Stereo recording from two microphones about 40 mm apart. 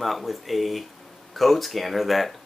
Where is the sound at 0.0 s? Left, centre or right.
Centre.